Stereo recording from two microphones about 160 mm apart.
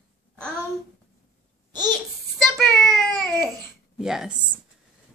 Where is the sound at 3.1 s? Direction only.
25° right (ahead or behind).